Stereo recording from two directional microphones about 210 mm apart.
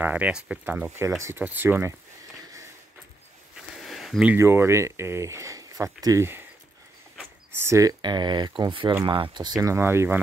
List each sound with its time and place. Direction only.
0.0 s speech: 5° right (ahead or behind)
3.7 s speech: centre (ahead or behind)
7.6 s speech: 15° right (ahead or behind)